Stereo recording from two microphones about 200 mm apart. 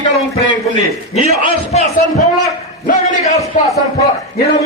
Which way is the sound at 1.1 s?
30° left (ahead or behind).